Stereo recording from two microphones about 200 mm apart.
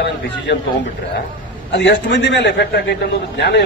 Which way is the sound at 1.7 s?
65° left (ahead or behind).